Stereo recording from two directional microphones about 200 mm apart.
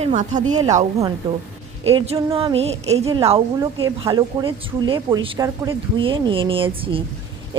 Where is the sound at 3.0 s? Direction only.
25° right (ahead or behind).